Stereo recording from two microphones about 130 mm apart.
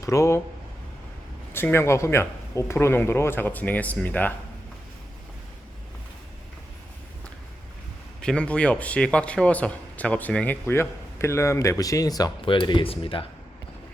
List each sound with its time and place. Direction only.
0.0 s speech: 25° left (ahead or behind)
1.5 s speech: 20° left (ahead or behind)
8.2 s speech: 5° left (ahead or behind); by 13.2 s 45° left (ahead or behind)